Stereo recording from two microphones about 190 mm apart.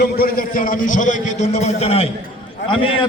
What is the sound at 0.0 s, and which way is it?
A man's voice, 50° left (ahead or behind).